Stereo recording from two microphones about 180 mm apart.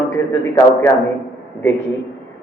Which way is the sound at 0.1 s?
15° left (ahead or behind).